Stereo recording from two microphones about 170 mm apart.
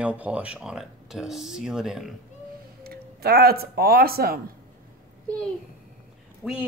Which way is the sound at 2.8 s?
65° right (ahead or behind).